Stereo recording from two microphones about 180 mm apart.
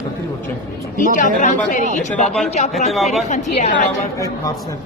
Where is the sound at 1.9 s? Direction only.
40° left (ahead or behind).